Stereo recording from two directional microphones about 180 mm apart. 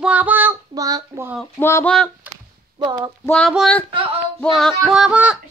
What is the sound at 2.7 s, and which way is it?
Speech, 25° right (ahead or behind).